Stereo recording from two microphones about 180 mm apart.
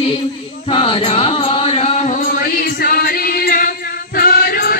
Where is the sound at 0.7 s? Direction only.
30° left (ahead or behind).